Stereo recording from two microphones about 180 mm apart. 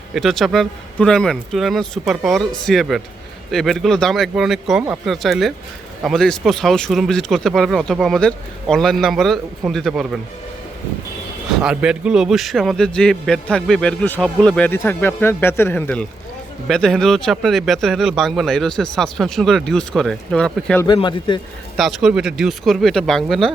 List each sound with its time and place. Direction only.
0.1 s a man's voice: centre (ahead or behind)
11.6 s a man's voice: 5° right (ahead or behind)
20.8 s speech: 25° left (ahead or behind)
21.8 s a man's voice: centre (ahead or behind)